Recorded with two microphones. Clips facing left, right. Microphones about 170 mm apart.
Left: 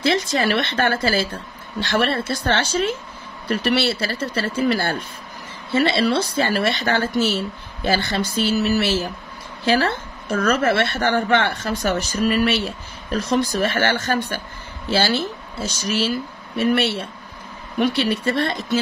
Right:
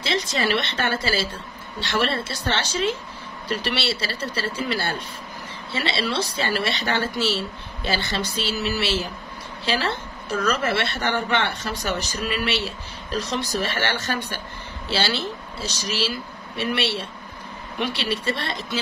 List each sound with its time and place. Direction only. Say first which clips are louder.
0.0 s a woman's voice: left 5 dB; 50° left (ahead or behind)